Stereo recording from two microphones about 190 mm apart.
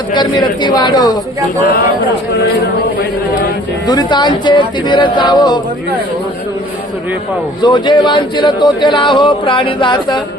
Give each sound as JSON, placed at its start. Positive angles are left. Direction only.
{"t": 0.1, "sound": "speech", "side_deg": 25}
{"t": 3.8, "sound": "speech", "side_deg": 20}
{"t": 7.6, "sound": "speech", "side_deg": 25}